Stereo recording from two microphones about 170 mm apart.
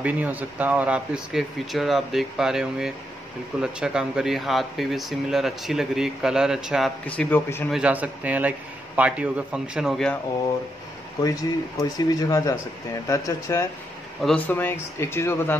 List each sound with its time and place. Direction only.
0.0 s speech: 10° right (ahead or behind)
7.1 s speech: 10° left (ahead or behind)
7.7 s a man's voice: 10° right (ahead or behind)
11.8 s speech: 20° left (ahead or behind)